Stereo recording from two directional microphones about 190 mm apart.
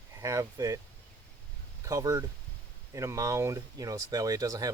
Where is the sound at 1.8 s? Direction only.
20° right (ahead or behind).